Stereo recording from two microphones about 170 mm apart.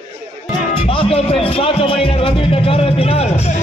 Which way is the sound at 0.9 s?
35° left (ahead or behind).